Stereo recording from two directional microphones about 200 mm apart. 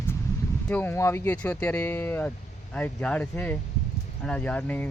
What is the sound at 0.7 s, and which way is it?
Speech, 10° left (ahead or behind).